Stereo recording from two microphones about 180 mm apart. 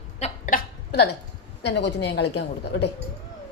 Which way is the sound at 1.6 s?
70° left (ahead or behind).